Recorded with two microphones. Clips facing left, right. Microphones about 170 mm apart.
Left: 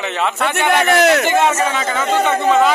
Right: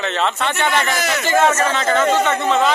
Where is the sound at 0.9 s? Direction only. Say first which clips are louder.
Left 9 dB; 60° left (ahead or behind).